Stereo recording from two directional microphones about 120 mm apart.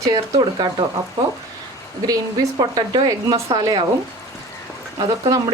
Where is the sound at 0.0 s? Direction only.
30° right (ahead or behind).